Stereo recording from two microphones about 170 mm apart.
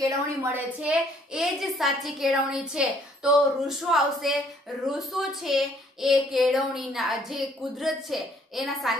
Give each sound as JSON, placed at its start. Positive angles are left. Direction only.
{"t": 0.0, "sound": "a woman's voice", "side_deg": -15}
{"t": 0.7, "sound": "a woman's voice", "side_deg": -5}